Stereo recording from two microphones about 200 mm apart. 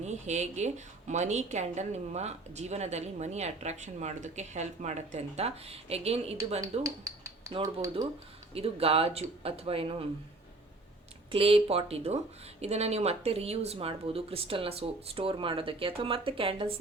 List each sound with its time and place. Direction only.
0.0 s a woman's voice: 35° right (ahead or behind)
6.6 s speech: 15° right (ahead or behind)
8.5 s speech: 30° right (ahead or behind)
11.3 s speech: 30° right (ahead or behind)